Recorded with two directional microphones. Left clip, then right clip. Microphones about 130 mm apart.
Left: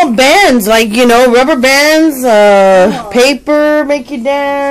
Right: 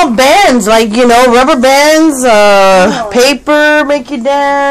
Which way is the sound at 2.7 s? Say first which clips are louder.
Even; 35° left (ahead or behind).